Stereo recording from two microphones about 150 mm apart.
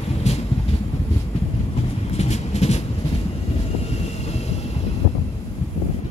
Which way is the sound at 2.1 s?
45° left (ahead or behind).